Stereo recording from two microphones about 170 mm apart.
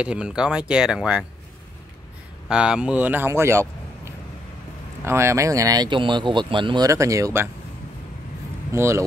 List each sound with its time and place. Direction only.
0.0 s speech: 5° right (ahead or behind)
2.4 s speech: 5° right (ahead or behind)
8.7 s speech: 15° right (ahead or behind)